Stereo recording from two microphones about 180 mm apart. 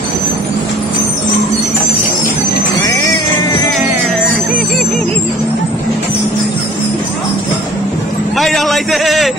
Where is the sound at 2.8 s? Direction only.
20° left (ahead or behind).